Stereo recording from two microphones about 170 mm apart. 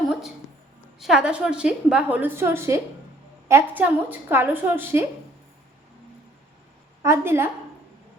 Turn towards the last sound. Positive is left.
turn(degrees=-15)  # may be behind; listen again after turning